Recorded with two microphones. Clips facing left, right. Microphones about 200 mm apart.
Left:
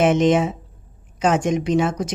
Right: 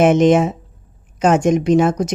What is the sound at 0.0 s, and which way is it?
Speech, 45° right (ahead or behind).